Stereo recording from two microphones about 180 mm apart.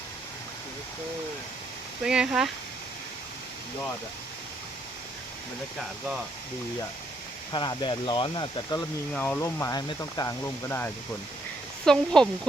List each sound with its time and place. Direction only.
2.0 s speech: 5° right (ahead or behind)
7.5 s speech: 25° left (ahead or behind)
9.1 s speech: 10° left (ahead or behind)